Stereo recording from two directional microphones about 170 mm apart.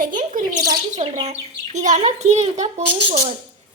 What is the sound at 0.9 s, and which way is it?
Speech, 40° right (ahead or behind).